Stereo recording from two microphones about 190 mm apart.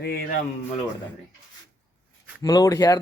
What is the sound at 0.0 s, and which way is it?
Speech, 50° left (ahead or behind).